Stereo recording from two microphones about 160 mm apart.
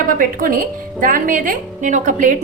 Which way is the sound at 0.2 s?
60° right (ahead or behind).